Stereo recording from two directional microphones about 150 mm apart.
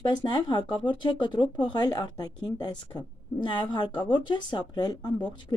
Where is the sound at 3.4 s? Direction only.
30° left (ahead or behind).